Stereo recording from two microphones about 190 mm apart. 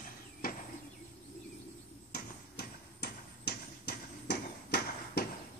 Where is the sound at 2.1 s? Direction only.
55° left (ahead or behind).